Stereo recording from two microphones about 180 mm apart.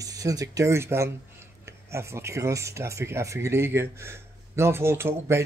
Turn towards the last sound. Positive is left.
turn(degrees=-15)  # may be behind; listen again after turning